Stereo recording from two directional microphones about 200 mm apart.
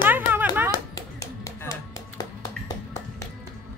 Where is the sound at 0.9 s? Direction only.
15° left (ahead or behind).